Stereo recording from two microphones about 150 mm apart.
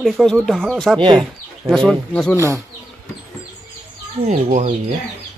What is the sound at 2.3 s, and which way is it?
Speech, 20° right (ahead or behind).